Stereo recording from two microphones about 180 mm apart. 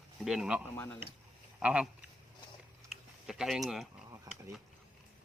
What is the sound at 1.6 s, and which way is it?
Speech, 5° right (ahead or behind).